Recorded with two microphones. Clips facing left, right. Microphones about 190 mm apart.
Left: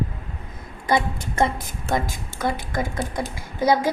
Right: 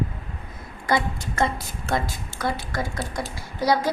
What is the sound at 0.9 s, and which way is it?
Speech, 20° left (ahead or behind).